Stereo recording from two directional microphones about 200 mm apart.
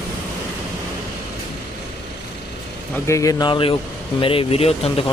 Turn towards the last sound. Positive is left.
turn(degrees=30)  # may be behind; listen again after turning